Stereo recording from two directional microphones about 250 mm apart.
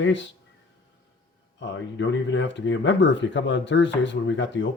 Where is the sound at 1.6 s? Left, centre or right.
Left.